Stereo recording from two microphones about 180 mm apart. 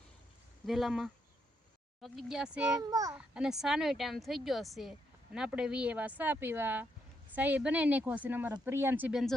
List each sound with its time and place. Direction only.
0.7 s speech: centre (ahead or behind)
2.8 s a child's voice: 20° right (ahead or behind)
3.2 s speech: 5° right (ahead or behind)